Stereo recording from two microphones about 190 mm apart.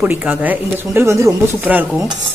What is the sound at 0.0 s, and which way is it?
Speech, 10° right (ahead or behind).